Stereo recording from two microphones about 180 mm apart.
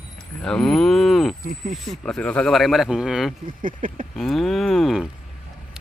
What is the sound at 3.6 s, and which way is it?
Speech, 50° right (ahead or behind).